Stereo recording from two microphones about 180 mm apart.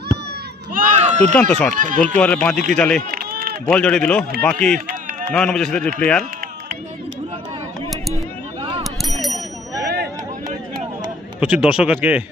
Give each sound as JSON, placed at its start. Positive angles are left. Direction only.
{"t": 0.7, "sound": "a sound", "side_deg": -45}
{"t": 1.4, "sound": "speech", "side_deg": 5}
{"t": 1.7, "sound": "speech", "side_deg": -45}
{"t": 2.1, "sound": "a man's voice", "side_deg": 5}
{"t": 3.1, "sound": "run", "side_deg": -55}
{"t": 3.7, "sound": "a man's voice", "side_deg": 5}
{"t": 5.3, "sound": "a man's voice", "side_deg": 5}
{"t": 8.8, "sound": "a sound", "side_deg": 0}
{"t": 9.8, "sound": "a sound", "side_deg": -60}
{"t": 11.3, "sound": "a man's voice", "side_deg": -5}